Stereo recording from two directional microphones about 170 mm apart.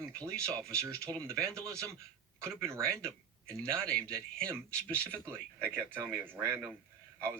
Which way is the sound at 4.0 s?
5° left (ahead or behind).